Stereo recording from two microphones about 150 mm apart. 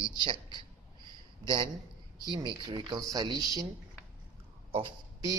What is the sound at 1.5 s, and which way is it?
A man's voice, 35° right (ahead or behind).